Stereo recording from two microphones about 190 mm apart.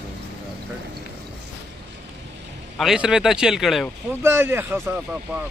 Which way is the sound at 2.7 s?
5° right (ahead or behind).